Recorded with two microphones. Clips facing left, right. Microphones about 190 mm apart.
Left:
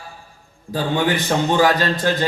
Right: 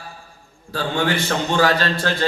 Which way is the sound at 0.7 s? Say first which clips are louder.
Left 2 dB; 15° left (ahead or behind).